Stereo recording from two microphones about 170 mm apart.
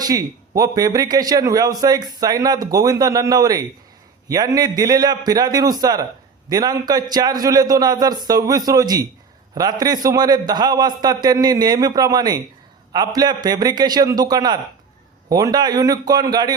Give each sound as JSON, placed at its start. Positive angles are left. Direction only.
{"t": 0.0, "sound": "a man's voice", "side_deg": -20}